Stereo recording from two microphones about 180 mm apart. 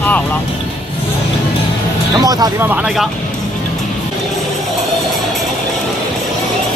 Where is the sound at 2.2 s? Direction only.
20° right (ahead or behind).